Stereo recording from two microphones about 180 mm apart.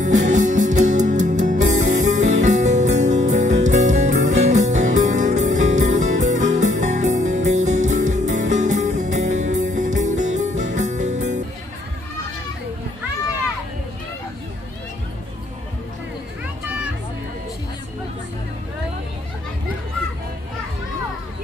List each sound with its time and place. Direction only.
0.0 s music: 45° right (ahead or behind)
16.6 s music: 5° right (ahead or behind)